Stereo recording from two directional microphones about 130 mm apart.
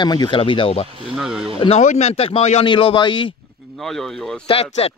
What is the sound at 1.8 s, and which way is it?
Speech, 55° left (ahead or behind).